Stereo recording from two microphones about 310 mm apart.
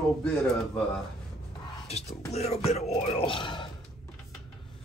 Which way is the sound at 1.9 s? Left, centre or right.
Left.